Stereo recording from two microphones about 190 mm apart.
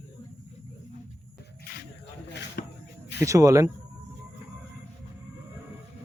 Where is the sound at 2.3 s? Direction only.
60° left (ahead or behind).